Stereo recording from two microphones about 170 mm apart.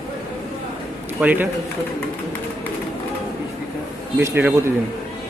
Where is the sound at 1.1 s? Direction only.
10° right (ahead or behind).